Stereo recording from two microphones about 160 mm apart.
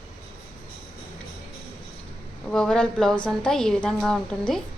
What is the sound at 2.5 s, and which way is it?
A woman's voice, 5° left (ahead or behind).